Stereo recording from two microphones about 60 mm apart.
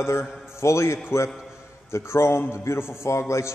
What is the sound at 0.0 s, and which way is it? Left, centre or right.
A man's voice, left.